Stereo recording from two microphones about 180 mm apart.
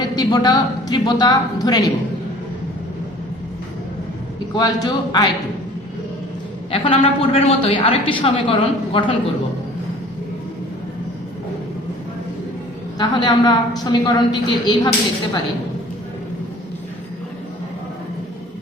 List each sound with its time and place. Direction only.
0.2 s a woman's voice: 20° left (ahead or behind)
4.5 s a woman's voice: 20° left (ahead or behind)
6.7 s a woman's voice: 30° left (ahead or behind)
13.0 s a woman's voice: 25° left (ahead or behind)